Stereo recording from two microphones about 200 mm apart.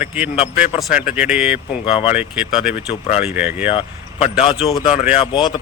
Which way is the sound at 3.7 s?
30° left (ahead or behind).